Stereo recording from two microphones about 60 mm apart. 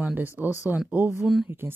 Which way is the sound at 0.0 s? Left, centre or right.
Right.